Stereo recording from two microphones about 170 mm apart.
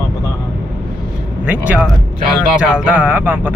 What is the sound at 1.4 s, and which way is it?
Speech, 10° right (ahead or behind).